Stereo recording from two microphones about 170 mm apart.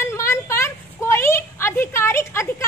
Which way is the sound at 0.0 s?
15° left (ahead or behind).